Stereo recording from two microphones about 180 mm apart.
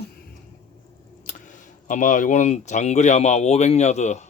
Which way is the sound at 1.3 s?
45° left (ahead or behind).